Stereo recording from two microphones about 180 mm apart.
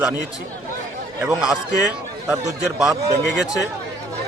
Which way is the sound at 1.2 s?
5° right (ahead or behind).